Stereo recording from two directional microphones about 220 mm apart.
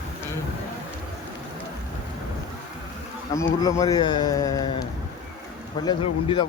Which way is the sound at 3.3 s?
15° left (ahead or behind).